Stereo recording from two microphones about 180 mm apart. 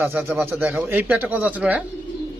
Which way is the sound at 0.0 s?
10° right (ahead or behind).